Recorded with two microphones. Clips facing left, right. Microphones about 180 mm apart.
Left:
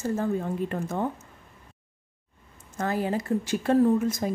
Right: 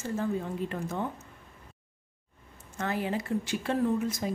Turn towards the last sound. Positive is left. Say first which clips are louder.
# left 6 dB
turn(degrees=45)  # may be behind; listen again after turning